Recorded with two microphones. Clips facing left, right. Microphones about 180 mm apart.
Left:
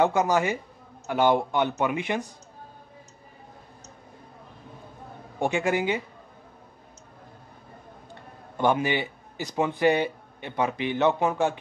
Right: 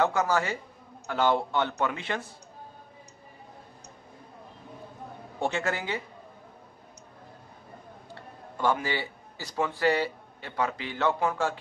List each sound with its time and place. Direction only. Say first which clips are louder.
0.0 s a man's voice: left 3 dB; 20° left (ahead or behind)
5.4 s a man's voice: left 5 dB; 15° left (ahead or behind)
8.1 s a man's voice: right 2 dB; 20° left (ahead or behind)